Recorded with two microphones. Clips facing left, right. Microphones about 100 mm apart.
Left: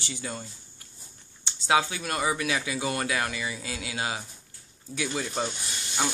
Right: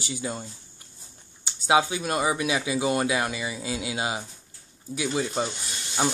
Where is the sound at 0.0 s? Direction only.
15° right (ahead or behind).